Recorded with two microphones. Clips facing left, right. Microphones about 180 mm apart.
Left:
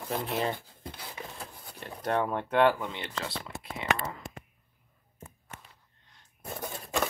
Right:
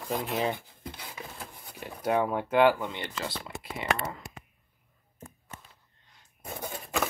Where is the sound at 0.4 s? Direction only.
15° right (ahead or behind).